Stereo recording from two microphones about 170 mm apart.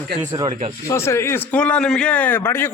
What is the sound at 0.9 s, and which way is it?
A man's voice, 15° left (ahead or behind).